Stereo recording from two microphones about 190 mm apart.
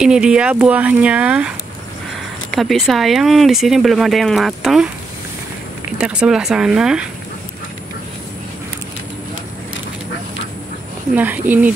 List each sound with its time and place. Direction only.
0.0 s speech: 5° right (ahead or behind)
2.5 s speech: centre (ahead or behind)
5.9 s speech: 5° right (ahead or behind)
11.1 s speech: 10° right (ahead or behind)